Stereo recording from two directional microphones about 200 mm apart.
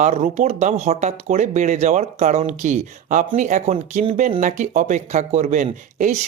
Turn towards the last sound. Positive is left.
turn(degrees=-35)  # may be behind; listen again after turning